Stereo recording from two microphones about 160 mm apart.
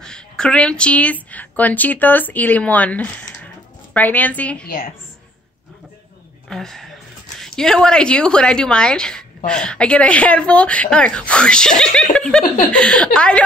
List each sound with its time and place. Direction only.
0.0 s speech: 5° left (ahead or behind)
4.6 s a woman's voice: 65° left (ahead or behind)
6.5 s a woman's voice: centre (ahead or behind)